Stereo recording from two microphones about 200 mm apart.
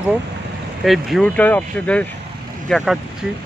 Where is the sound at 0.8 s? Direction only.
Centre (ahead or behind).